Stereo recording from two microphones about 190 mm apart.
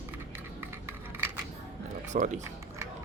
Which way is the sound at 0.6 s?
10° right (ahead or behind).